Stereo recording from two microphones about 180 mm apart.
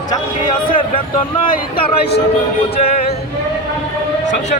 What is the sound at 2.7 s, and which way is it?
Music, 35° left (ahead or behind).